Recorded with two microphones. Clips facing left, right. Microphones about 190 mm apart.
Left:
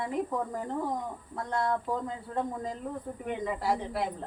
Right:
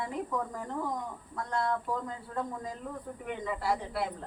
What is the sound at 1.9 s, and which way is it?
Speech, 20° left (ahead or behind).